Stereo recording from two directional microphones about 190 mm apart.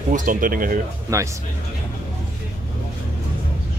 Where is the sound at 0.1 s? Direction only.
45° right (ahead or behind).